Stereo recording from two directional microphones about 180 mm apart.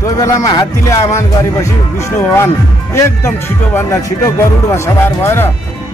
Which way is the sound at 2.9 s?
15° left (ahead or behind).